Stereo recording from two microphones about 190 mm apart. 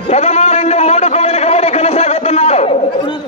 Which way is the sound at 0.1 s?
35° left (ahead or behind).